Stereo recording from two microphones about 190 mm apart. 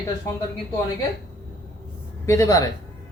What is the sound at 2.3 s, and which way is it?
Speech, 15° left (ahead or behind).